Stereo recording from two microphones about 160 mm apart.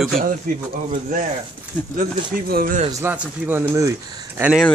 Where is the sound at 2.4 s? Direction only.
70° right (ahead or behind).